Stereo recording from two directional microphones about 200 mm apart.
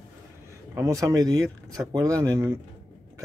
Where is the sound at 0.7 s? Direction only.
15° right (ahead or behind).